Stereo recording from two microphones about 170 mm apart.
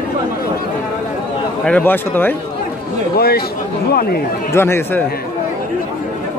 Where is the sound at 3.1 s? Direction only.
65° left (ahead or behind).